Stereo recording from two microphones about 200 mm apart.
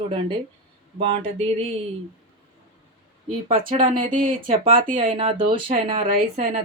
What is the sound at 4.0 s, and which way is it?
Speech, 40° right (ahead or behind).